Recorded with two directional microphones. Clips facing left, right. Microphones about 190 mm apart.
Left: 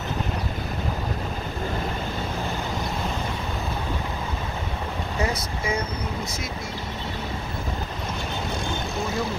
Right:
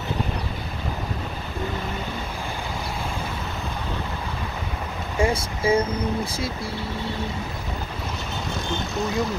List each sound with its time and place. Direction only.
5.2 s speech: 30° right (ahead or behind)